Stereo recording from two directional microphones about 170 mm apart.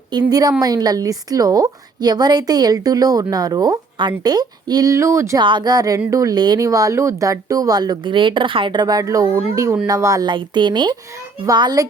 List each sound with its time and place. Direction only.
0.1 s a woman's voice: 20° right (ahead or behind)